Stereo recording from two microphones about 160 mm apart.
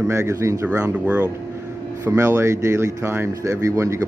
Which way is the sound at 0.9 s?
10° right (ahead or behind).